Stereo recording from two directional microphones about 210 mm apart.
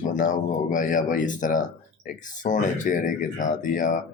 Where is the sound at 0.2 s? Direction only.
40° left (ahead or behind).